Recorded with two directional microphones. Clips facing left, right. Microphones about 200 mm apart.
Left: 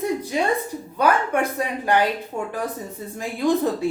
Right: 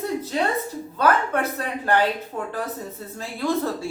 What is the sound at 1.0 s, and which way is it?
A woman's voice, 15° left (ahead or behind).